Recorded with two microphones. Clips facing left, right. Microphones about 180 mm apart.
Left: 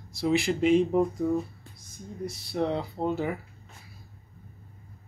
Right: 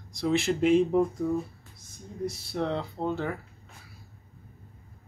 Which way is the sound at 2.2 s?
Centre (ahead or behind).